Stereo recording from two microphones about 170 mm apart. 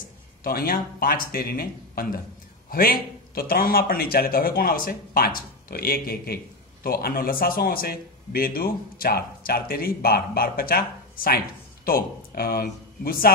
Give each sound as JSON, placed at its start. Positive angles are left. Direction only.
{"t": 0.4, "sound": "a man's voice", "side_deg": 60}